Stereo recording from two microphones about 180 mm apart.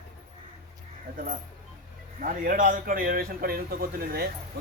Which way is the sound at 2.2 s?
50° right (ahead or behind).